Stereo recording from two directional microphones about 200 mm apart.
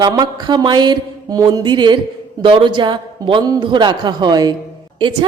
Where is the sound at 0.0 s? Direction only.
20° right (ahead or behind).